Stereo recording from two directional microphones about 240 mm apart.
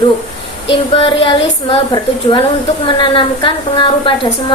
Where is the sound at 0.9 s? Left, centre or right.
Left.